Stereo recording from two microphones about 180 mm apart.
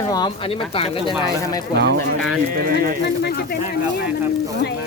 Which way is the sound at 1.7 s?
70° right (ahead or behind).